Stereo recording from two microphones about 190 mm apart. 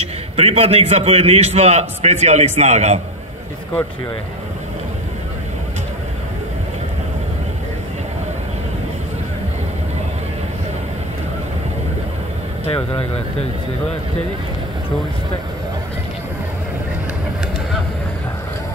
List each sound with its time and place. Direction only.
0.4 s a man's voice: 30° right (ahead or behind)
12.6 s speech: 30° left (ahead or behind)